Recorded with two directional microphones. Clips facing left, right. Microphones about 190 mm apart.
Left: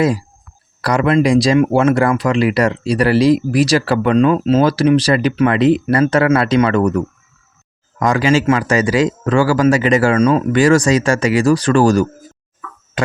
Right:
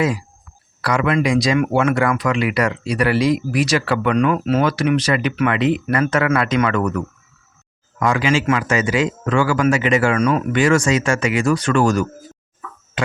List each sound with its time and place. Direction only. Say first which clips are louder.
0.0 s speech: left 4 dB; 35° left (ahead or behind)